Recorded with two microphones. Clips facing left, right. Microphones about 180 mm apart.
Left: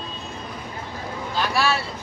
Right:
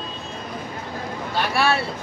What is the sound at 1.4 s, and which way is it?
Speech, 60° right (ahead or behind).